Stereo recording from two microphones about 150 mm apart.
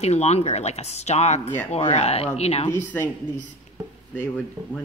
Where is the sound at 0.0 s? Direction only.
45° left (ahead or behind).